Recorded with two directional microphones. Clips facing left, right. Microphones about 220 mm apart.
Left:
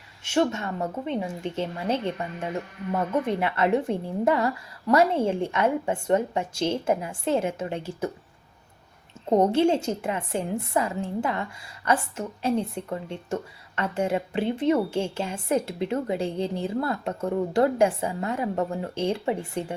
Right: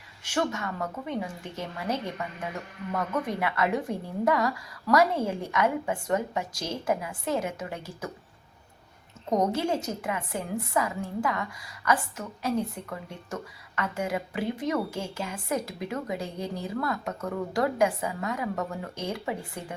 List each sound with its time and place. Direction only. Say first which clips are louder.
0.3 s a woman's voice: left 5 dB; 25° left (ahead or behind)
9.3 s a woman's voice: left 6 dB; 30° left (ahead or behind)